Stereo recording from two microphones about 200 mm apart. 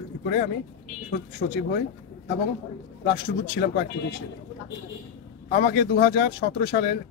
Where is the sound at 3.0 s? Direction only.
50° left (ahead or behind).